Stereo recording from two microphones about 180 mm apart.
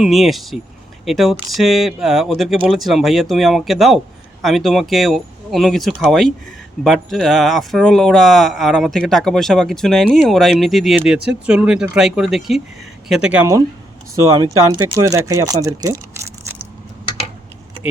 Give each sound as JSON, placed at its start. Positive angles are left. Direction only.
{"t": 0.0, "sound": "speech", "side_deg": 0}